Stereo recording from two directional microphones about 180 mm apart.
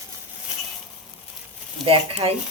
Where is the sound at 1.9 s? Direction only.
35° right (ahead or behind).